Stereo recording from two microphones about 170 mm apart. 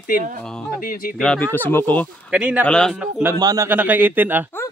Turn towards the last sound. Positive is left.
turn(degrees=-10)  # may be behind; listen again after turning